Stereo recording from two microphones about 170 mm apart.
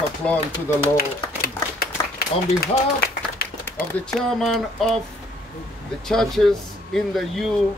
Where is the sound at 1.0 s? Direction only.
65° left (ahead or behind).